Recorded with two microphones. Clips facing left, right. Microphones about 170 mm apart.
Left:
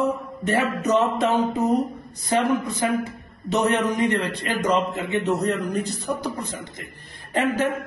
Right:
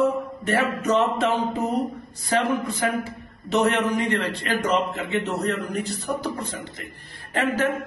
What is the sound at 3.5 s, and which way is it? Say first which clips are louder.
A man's voice: even; 20° left (ahead or behind).